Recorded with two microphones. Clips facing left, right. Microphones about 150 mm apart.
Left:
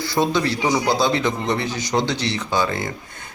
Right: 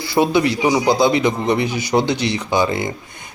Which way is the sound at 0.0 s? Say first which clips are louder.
Right 4 dB; 15° right (ahead or behind).